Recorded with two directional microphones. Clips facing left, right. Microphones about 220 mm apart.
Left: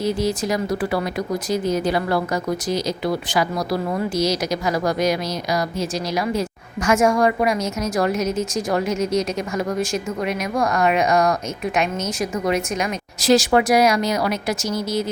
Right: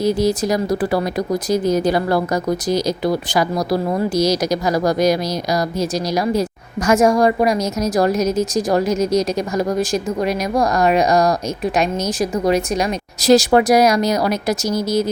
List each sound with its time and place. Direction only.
0.0 s a woman's voice: 40° right (ahead or behind)